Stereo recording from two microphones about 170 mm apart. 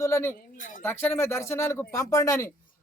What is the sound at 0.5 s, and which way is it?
Speech, 50° left (ahead or behind).